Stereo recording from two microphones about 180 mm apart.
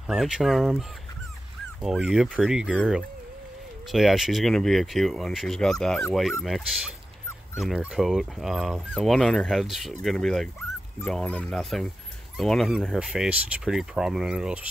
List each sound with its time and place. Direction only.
0.0 s speech: centre (ahead or behind)
7.5 s speech: centre (ahead or behind)